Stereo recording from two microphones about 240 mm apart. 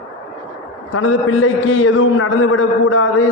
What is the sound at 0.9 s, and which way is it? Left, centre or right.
A man's voice, left.